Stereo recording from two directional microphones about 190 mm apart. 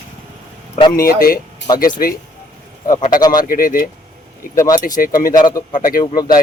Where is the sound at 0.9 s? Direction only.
50° left (ahead or behind).